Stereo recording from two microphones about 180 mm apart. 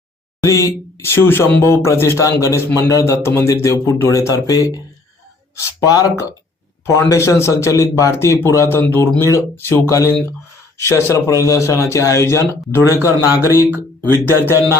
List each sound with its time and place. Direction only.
0.4 s a man's voice: 15° left (ahead or behind)
14.4 s speech: 15° right (ahead or behind)